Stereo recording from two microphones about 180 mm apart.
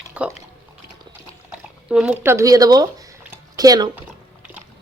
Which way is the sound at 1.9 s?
5° right (ahead or behind).